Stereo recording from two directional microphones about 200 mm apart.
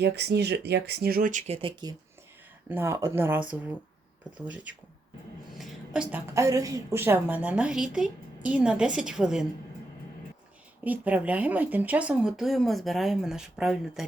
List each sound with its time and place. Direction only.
0.0 s speech: 55° right (ahead or behind); by 2.0 s 25° right (ahead or behind)
2.6 s speech: 10° right (ahead or behind)
5.5 s a woman's voice: 5° right (ahead or behind)
10.8 s a woman's voice: 10° right (ahead or behind)